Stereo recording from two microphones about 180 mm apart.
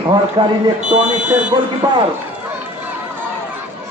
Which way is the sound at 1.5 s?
25° right (ahead or behind).